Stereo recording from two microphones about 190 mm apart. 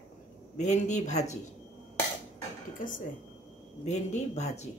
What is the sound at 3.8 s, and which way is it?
Speech, 35° left (ahead or behind).